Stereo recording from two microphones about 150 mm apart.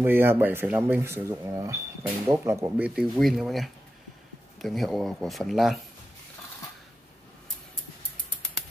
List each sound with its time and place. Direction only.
0.0 s speech: 15° right (ahead or behind)
3.0 s speech: centre (ahead or behind)